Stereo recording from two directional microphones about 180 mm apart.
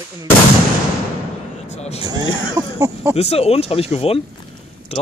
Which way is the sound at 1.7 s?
35° left (ahead or behind).